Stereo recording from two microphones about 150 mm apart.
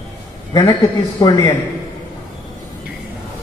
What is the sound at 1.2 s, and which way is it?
Speech, 25° left (ahead or behind).